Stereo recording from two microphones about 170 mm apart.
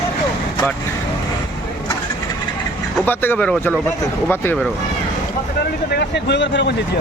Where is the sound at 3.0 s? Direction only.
10° left (ahead or behind).